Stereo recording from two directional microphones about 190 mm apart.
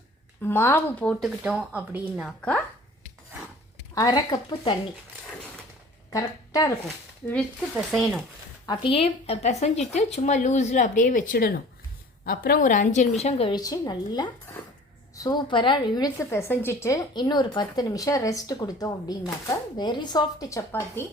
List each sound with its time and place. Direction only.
0.4 s speech: 10° left (ahead or behind)
1.5 s speech: 5° right (ahead or behind)
2.4 s speech: 10° left (ahead or behind)
3.9 s a woman's voice: 20° left (ahead or behind)
6.1 s a woman's voice: 20° left (ahead or behind)
6.8 s speech: 5° left (ahead or behind)
8.6 s speech: 25° left (ahead or behind)
13.6 s a woman's voice: 20° left (ahead or behind)